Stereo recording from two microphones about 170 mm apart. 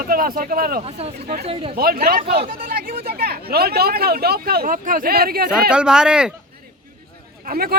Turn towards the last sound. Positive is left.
turn(degrees=-60)  # may be behind; listen again after turning